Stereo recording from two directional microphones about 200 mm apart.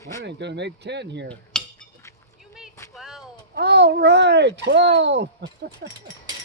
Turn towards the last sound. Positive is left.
turn(degrees=-55)  # may be behind; listen again after turning